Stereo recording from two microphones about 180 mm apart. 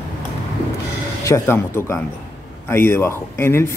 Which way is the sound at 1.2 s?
15° left (ahead or behind).